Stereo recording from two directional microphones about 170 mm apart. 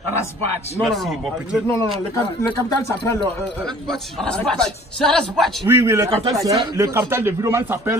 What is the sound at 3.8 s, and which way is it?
A man's voice, 5° left (ahead or behind).